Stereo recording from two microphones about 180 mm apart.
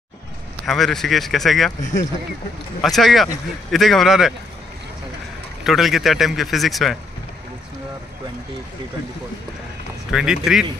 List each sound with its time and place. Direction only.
0.7 s speech: centre (ahead or behind)
1.8 s speech: 45° left (ahead or behind)
2.8 s speech: centre (ahead or behind)
5.6 s speech: centre (ahead or behind)
10.1 s speech: 5° right (ahead or behind)